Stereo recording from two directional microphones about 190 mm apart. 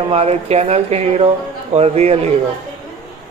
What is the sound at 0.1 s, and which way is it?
Speech, 35° right (ahead or behind).